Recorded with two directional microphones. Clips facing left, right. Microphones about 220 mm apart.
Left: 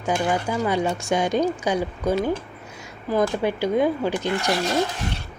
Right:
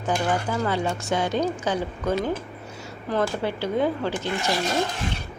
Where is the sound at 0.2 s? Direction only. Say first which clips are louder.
Left 2 dB; 10° left (ahead or behind).